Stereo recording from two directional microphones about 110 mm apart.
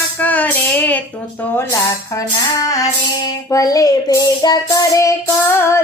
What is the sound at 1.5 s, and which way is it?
Speech, 30° left (ahead or behind).